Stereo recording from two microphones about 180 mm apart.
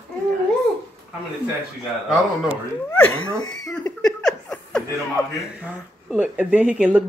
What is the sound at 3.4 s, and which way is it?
Speech, 20° left (ahead or behind).